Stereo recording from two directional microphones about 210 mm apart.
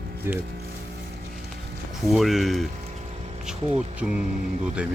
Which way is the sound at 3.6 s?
25° right (ahead or behind).